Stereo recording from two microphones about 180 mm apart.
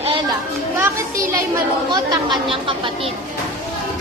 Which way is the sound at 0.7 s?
15° right (ahead or behind).